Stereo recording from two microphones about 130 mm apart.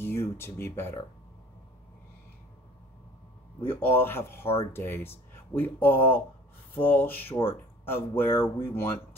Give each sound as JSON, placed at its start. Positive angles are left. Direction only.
{"t": 0.0, "sound": "speech", "side_deg": 20}
{"t": 3.6, "sound": "speech", "side_deg": 15}